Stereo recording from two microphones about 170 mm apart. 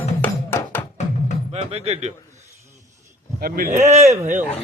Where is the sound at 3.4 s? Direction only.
60° right (ahead or behind).